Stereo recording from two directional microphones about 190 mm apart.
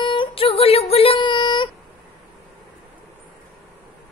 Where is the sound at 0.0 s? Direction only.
25° left (ahead or behind).